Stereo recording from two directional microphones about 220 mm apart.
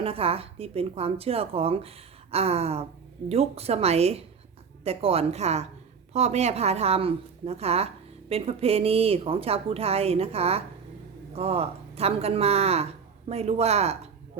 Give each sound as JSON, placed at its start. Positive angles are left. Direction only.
{"t": 0.0, "sound": "speech", "side_deg": -25}